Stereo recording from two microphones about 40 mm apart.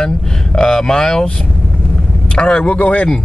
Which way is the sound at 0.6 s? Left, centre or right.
Centre.